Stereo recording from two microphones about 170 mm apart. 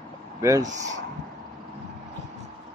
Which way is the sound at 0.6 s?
45° right (ahead or behind).